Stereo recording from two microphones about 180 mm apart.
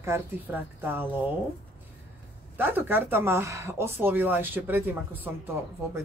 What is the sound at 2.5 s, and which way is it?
Speech, 10° right (ahead or behind).